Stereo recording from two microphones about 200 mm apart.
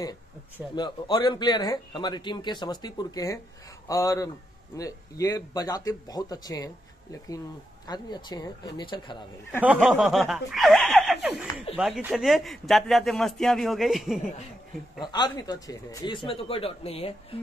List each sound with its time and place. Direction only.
0.7 s speech: 20° left (ahead or behind)
9.6 s snicker: 5° right (ahead or behind)
11.7 s speech: 5° right (ahead or behind)
15.0 s speech: 20° left (ahead or behind)